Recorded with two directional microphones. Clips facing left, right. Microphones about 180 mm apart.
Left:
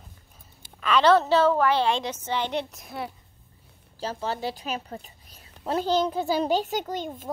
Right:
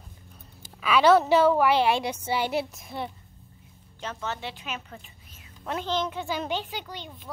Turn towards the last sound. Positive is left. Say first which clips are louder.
# left 9 dB
turn(degrees=45)  # may be behind; listen again after turning